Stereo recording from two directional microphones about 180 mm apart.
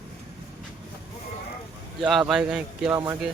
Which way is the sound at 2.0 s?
Centre (ahead or behind).